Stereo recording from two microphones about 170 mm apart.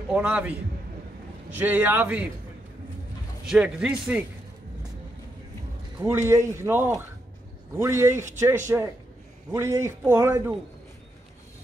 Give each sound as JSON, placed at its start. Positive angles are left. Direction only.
{"t": 0.1, "sound": "speech", "side_deg": -5}
{"t": 3.4, "sound": "speech", "side_deg": -5}
{"t": 5.9, "sound": "speech", "side_deg": -15}